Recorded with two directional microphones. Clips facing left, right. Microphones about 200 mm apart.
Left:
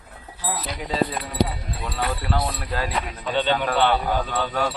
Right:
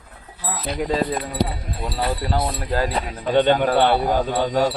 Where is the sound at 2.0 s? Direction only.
30° right (ahead or behind).